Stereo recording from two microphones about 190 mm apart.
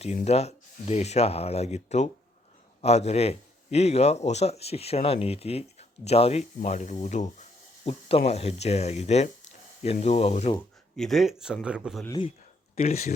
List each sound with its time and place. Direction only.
0.0 s speech: 35° left (ahead or behind)
10.9 s speech: centre (ahead or behind)
12.0 s speech: 20° left (ahead or behind)
12.7 s speech: 35° left (ahead or behind)